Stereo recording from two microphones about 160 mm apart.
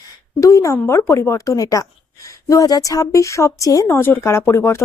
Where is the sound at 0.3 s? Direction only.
20° left (ahead or behind).